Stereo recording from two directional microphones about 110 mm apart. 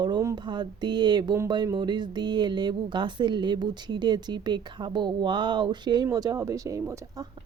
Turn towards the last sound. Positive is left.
turn(degrees=-30)  # may be behind; listen again after turning